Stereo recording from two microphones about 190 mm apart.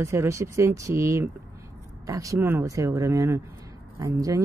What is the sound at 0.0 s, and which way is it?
Speech, 15° right (ahead or behind).